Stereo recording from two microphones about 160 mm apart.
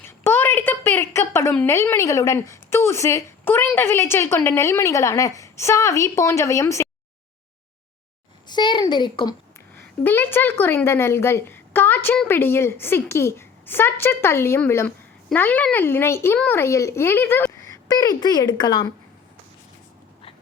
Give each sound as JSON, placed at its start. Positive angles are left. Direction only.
{"t": 0.0, "sound": "a sound", "side_deg": 15}
{"t": 1.6, "sound": "a woman's voice", "side_deg": 15}
{"t": 8.4, "sound": "a woman's voice", "side_deg": 30}
{"t": 10.0, "sound": "a woman's voice", "side_deg": 15}